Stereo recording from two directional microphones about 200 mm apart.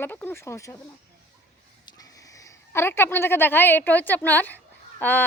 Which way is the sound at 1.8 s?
15° left (ahead or behind).